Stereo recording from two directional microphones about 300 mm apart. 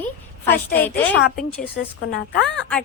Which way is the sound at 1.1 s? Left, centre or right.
Left.